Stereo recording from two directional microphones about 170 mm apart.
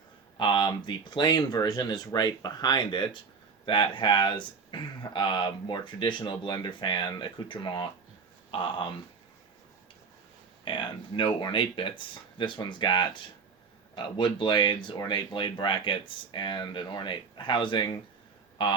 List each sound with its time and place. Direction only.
0.3 s speech: 25° left (ahead or behind)
10.7 s speech: 30° left (ahead or behind)